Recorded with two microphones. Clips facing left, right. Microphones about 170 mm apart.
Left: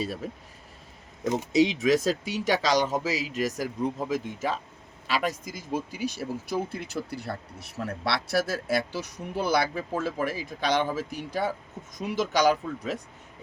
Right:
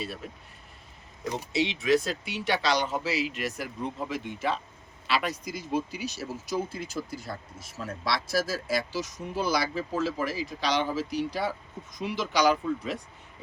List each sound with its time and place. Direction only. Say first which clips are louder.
1.5 s speech: left 3 dB; 40° left (ahead or behind)